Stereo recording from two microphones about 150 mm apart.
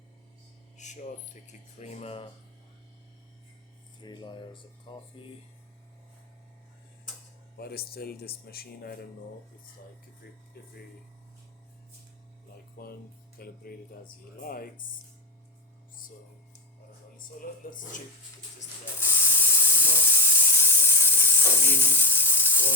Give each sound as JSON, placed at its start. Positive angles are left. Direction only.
{"t": 0.8, "sound": "speech", "side_deg": 55}
{"t": 4.0, "sound": "speech", "side_deg": 30}
{"t": 7.5, "sound": "speech", "side_deg": 90}
{"t": 10.2, "sound": "speech", "side_deg": 90}
{"t": 12.8, "sound": "speech", "side_deg": 80}
{"t": 13.4, "sound": "speech", "side_deg": 90}
{"t": 14.4, "sound": "speech", "side_deg": 75}
{"t": 17.4, "sound": "speech", "side_deg": 70}
{"t": 18.9, "sound": "a sound", "side_deg": 15}